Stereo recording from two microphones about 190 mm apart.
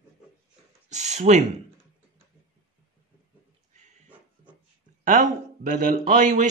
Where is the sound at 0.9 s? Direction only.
35° right (ahead or behind).